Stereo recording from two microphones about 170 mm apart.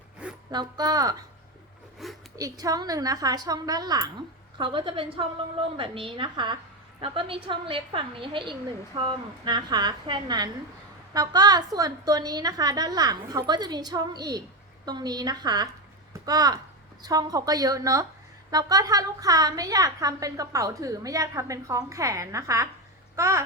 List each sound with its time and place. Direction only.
0.5 s a woman's voice: 25° right (ahead or behind)
2.3 s a woman's voice: 20° right (ahead or behind)